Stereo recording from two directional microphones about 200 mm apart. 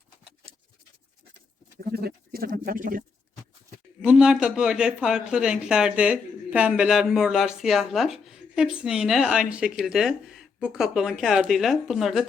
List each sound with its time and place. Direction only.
1.9 s speech: 50° right (ahead or behind)
4.0 s speech: 5° right (ahead or behind)